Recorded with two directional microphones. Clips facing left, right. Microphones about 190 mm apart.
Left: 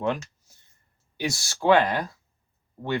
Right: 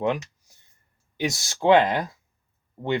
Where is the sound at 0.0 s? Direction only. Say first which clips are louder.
Right 2 dB; 15° right (ahead or behind).